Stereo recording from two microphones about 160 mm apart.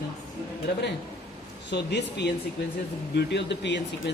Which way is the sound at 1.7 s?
90° left.